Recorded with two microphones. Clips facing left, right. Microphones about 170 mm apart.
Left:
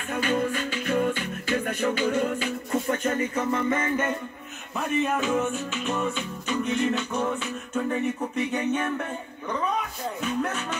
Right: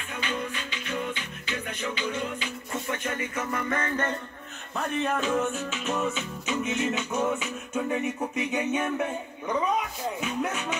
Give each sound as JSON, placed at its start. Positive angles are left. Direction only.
{"t": 0.1, "sound": "music", "side_deg": 50}
{"t": 4.7, "sound": "music", "side_deg": 5}
{"t": 10.2, "sound": "music", "side_deg": -10}